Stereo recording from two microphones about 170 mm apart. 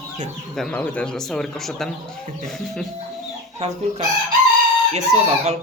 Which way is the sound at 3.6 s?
40° right (ahead or behind).